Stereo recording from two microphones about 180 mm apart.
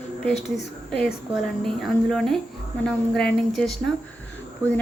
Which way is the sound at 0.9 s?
5° left (ahead or behind).